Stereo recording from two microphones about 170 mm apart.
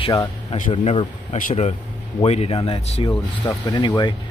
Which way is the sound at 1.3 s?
45° left (ahead or behind).